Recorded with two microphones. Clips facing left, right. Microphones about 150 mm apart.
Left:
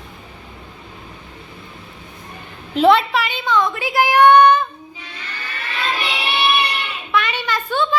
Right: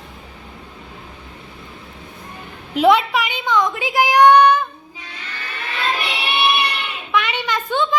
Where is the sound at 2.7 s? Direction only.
10° right (ahead or behind).